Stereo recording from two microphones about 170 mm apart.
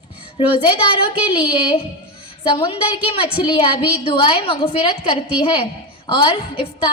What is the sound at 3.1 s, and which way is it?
A woman's voice, 35° left (ahead or behind).